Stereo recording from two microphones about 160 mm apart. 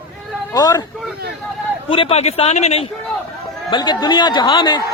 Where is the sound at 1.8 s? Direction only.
35° left (ahead or behind).